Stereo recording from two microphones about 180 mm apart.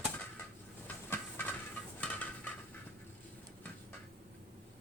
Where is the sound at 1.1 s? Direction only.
10° left (ahead or behind).